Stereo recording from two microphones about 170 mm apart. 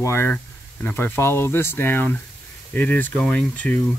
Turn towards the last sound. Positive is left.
turn(degrees=10)  # may be behind; listen again after turning